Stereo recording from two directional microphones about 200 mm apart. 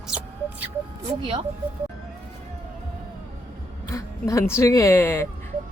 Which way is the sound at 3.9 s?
15° left (ahead or behind).